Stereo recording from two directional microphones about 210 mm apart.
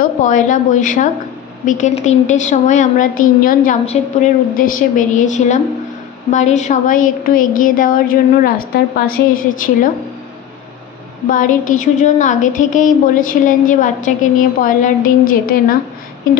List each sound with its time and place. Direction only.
0.2 s a woman's voice: 40° left (ahead or behind)
11.2 s a woman's voice: 40° left (ahead or behind)